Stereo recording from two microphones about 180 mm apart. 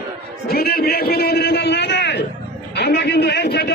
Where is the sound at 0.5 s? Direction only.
60° left (ahead or behind).